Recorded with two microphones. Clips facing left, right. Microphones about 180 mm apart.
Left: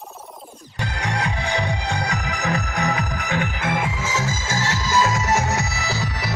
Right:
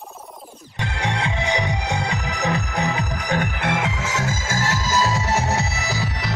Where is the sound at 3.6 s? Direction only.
80° right; by 6.0 s 25° right (ahead or behind).